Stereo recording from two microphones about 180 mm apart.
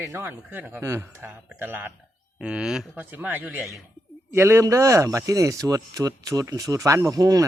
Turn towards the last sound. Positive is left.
turn(degrees=-20)  # may be behind; listen again after turning